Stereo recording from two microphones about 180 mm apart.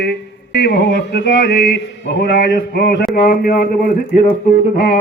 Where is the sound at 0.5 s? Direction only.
65° left (ahead or behind).